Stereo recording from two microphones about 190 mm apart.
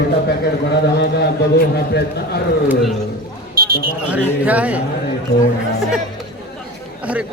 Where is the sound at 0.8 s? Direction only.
60° left (ahead or behind).